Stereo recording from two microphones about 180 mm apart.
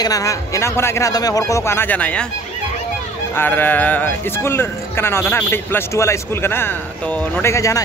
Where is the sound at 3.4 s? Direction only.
10° left (ahead or behind).